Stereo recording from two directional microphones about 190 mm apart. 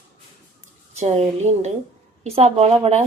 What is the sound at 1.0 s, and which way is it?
Speech, 35° right (ahead or behind).